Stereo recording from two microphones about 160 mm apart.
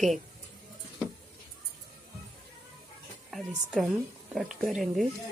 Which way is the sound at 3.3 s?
Centre (ahead or behind).